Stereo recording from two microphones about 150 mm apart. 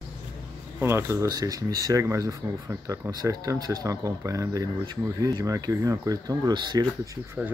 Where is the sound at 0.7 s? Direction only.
15° right (ahead or behind).